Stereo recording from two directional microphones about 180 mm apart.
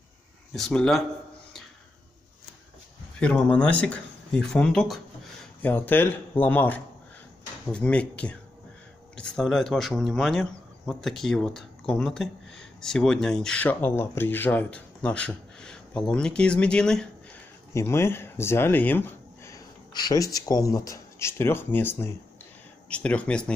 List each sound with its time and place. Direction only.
0.5 s speech: centre (ahead or behind)
3.2 s speech: 5° left (ahead or behind)